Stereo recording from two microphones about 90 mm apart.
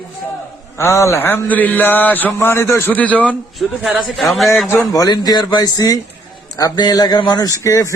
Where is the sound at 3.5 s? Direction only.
Centre (ahead or behind).